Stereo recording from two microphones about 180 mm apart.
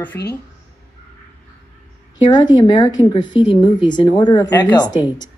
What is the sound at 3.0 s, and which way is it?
Speech, 25° left (ahead or behind).